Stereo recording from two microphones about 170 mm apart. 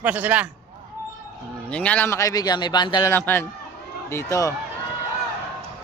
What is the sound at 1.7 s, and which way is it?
A man's voice, 5° left (ahead or behind).